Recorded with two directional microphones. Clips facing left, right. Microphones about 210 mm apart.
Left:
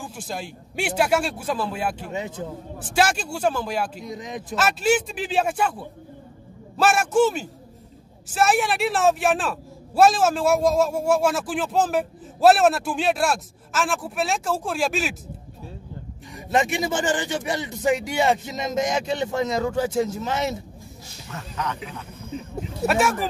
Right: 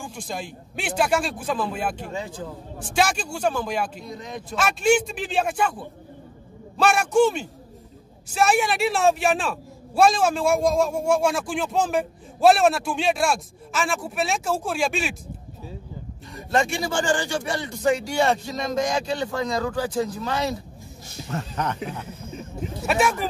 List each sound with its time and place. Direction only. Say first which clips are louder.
0.0 s speech: even; 5° left (ahead or behind)
2.1 s a man's voice: left 2 dB; 20° left (ahead or behind)
2.9 s speech: left 1 dB; 5° left (ahead or behind)
4.6 s speech: right 1 dB; 5° left (ahead or behind)
16.3 s a man's voice: left 1 dB; 15° left (ahead or behind)
21.3 s speech: right 3 dB; 50° right (ahead or behind)
22.8 s speech: left 1 dB; centre (ahead or behind)